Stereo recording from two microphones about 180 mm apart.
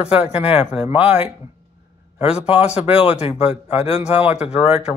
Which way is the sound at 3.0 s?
35° left (ahead or behind).